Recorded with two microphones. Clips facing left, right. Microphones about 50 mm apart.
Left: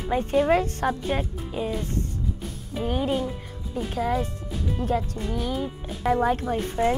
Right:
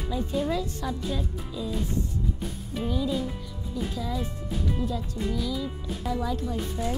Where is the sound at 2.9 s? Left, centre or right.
Left.